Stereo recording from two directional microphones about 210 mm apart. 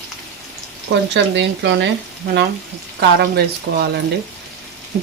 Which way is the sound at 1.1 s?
55° right (ahead or behind).